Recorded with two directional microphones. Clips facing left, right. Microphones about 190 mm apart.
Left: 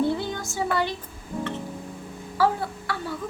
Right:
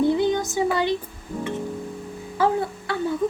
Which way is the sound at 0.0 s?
20° right (ahead or behind).